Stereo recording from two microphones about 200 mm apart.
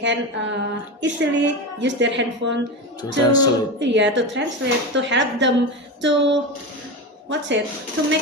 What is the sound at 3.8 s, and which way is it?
Speech, 60° right (ahead or behind).